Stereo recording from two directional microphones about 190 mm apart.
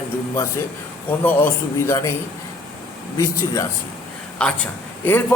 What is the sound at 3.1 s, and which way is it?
Speech, 15° left (ahead or behind).